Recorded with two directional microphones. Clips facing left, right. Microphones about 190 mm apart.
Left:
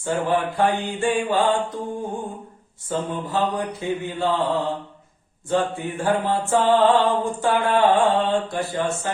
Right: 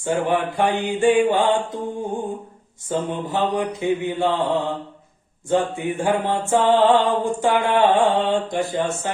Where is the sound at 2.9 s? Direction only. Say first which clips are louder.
Right 2 dB; 20° right (ahead or behind).